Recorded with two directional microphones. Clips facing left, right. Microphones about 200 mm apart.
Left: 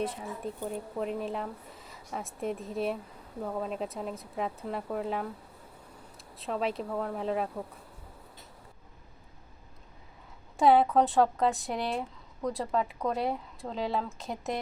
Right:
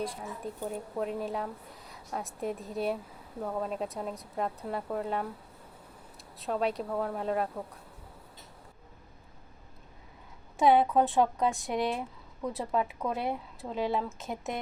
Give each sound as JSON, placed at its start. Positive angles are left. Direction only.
{"t": 0.6, "sound": "a woman's voice", "side_deg": 0}
{"t": 10.6, "sound": "a woman's voice", "side_deg": 0}